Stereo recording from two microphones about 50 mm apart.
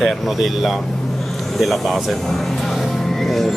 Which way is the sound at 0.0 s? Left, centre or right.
Centre.